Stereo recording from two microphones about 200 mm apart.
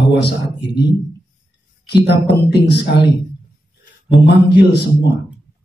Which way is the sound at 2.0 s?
55° left (ahead or behind).